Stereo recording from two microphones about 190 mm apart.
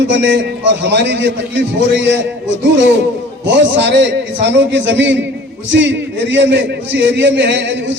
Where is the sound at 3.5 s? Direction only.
70° right (ahead or behind).